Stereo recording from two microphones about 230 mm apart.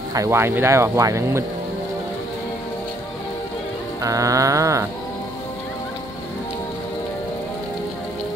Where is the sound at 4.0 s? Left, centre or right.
Centre.